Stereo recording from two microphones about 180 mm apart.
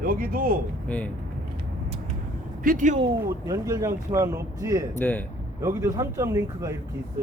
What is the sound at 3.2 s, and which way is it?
Speech, 20° right (ahead or behind).